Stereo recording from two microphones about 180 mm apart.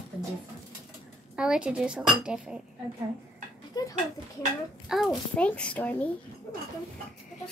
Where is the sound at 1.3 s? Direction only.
5° right (ahead or behind).